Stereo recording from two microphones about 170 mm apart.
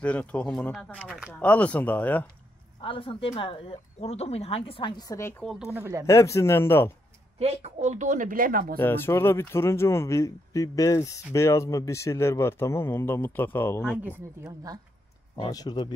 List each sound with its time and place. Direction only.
0.0 s speech: 10° left (ahead or behind)
1.3 s a man's voice: 10° left (ahead or behind)
2.8 s speech: 30° left (ahead or behind)
5.4 s speech: centre (ahead or behind)
6.0 s a man's voice: 15° left (ahead or behind)
7.3 s a woman's voice: 40° right (ahead or behind); by 8.7 s 55° right (ahead or behind)
8.7 s a man's voice: 15° left (ahead or behind)
13.8 s speech: 10° right (ahead or behind)
15.3 s speech: 25° left (ahead or behind)